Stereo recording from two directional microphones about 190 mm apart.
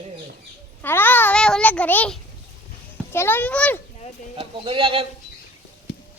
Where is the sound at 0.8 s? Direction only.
10° left (ahead or behind).